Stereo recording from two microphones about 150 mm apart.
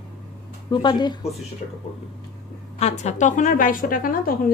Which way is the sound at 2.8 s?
50° left (ahead or behind).